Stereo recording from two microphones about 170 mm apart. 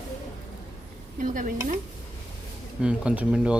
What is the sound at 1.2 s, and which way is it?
Speech, 50° right (ahead or behind).